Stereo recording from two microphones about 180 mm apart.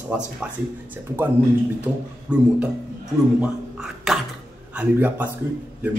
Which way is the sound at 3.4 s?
5° right (ahead or behind).